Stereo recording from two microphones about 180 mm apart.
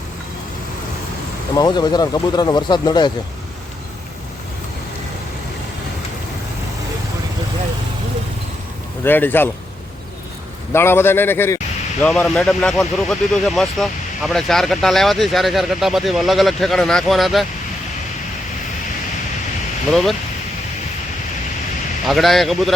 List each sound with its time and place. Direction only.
1.5 s speech: 25° left (ahead or behind)
9.0 s a man's voice: 10° left (ahead or behind)
10.7 s a man's voice: 15° left (ahead or behind)
19.9 s speech: centre (ahead or behind)
22.0 s speech: centre (ahead or behind)